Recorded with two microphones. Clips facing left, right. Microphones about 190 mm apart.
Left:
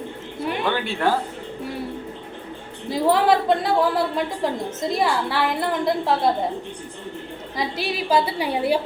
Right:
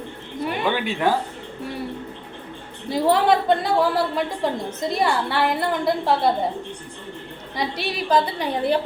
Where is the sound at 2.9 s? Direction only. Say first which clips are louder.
Even; centre (ahead or behind).